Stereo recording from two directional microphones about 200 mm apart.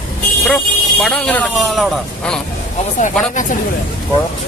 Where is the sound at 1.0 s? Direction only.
5° left (ahead or behind).